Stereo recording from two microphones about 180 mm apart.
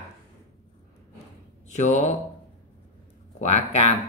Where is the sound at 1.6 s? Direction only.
40° left (ahead or behind).